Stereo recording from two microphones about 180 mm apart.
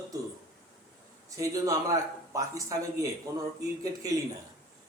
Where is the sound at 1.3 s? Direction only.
20° right (ahead or behind).